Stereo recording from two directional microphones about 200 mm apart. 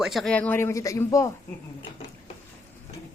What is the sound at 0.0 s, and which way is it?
Speech, centre (ahead or behind).